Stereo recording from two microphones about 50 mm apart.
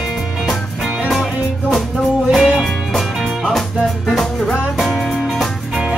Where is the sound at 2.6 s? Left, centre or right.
Centre.